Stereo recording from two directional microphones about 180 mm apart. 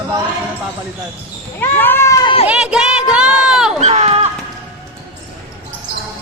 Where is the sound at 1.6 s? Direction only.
10° left (ahead or behind).